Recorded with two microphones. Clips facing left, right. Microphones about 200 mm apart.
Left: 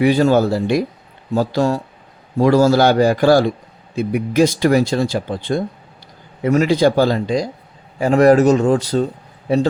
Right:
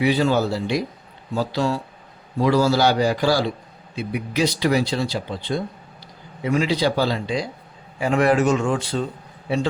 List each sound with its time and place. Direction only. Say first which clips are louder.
0.0 s speech: left 6 dB; 45° left (ahead or behind)